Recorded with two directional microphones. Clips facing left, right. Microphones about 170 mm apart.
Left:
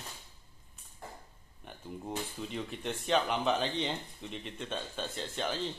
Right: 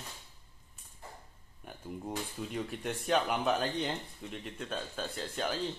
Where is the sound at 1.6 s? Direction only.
5° right (ahead or behind).